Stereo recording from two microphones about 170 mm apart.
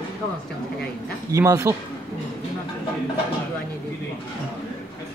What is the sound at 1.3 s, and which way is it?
Speech, 15° right (ahead or behind).